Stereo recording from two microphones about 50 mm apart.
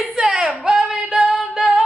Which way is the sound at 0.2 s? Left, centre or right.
Centre.